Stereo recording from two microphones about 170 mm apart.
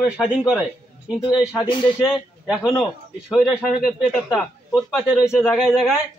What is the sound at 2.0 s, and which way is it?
A man's voice, 5° right (ahead or behind).